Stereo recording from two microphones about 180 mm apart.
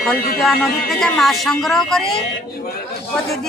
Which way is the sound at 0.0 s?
Centre (ahead or behind).